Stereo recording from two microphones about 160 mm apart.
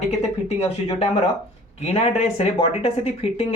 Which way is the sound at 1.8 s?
40° left (ahead or behind).